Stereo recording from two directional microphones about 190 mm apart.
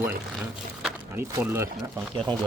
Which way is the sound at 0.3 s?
Centre (ahead or behind).